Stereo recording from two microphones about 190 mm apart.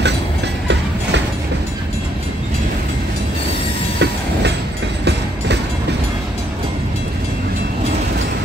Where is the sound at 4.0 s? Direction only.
65° right (ahead or behind).